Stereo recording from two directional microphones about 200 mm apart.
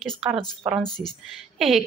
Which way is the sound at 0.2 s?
Centre (ahead or behind).